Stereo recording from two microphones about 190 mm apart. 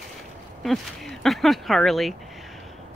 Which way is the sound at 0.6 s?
Centre (ahead or behind).